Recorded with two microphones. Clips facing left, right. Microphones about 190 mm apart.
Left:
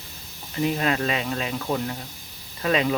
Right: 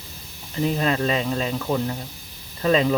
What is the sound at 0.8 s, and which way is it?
Speech, 35° right (ahead or behind).